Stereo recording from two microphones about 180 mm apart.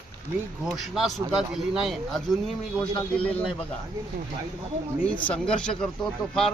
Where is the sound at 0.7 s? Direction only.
Centre (ahead or behind).